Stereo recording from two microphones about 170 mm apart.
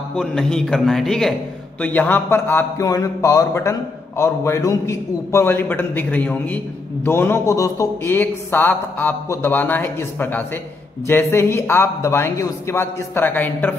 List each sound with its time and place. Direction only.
0.1 s a man's voice: 5° left (ahead or behind)